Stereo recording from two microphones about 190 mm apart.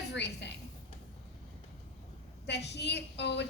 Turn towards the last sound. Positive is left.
turn(degrees=65)  # may be behind; listen again after turning